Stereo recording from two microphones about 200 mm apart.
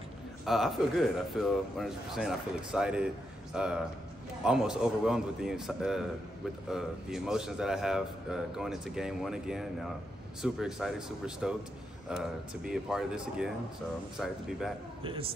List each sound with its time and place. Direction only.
0.5 s a man's voice: centre (ahead or behind)
15.0 s a man's voice: 25° right (ahead or behind)